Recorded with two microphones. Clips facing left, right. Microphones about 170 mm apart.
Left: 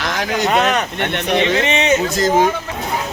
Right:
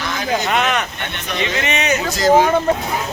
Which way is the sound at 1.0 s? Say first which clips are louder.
Left 8 dB; 70° left (ahead or behind).